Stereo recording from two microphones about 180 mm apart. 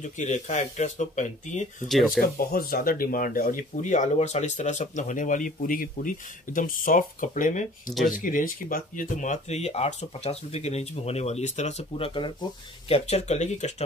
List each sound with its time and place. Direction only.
0.0 s speech: 40° left (ahead or behind)
1.9 s speech: centre (ahead or behind)
2.2 s speech: 55° left (ahead or behind); by 13.8 s 40° left (ahead or behind)